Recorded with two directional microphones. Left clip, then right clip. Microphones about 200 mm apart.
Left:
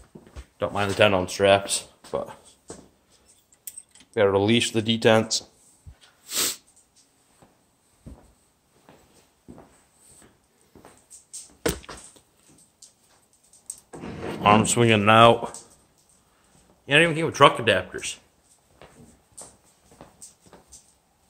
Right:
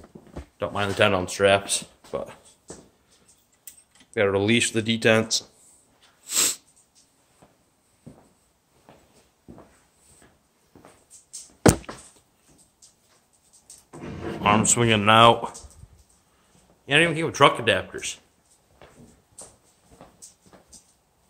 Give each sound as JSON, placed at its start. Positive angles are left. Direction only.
{"t": 0.6, "sound": "speech", "side_deg": 10}
{"t": 4.1, "sound": "speech", "side_deg": 5}
{"t": 6.2, "sound": "sneeze", "side_deg": 0}
{"t": 14.4, "sound": "speech", "side_deg": 10}
{"t": 16.8, "sound": "speech", "side_deg": 10}